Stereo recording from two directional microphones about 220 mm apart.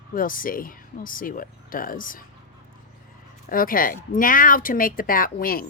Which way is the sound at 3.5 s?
40° left (ahead or behind).